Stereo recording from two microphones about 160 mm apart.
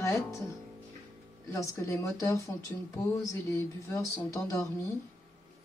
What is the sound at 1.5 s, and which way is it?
Speech, 20° left (ahead or behind).